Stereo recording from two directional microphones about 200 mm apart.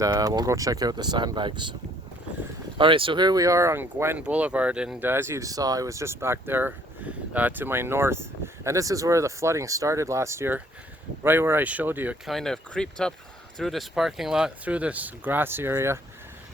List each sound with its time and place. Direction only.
0.0 s speech: 15° right (ahead or behind)
2.7 s speech: 25° right (ahead or behind)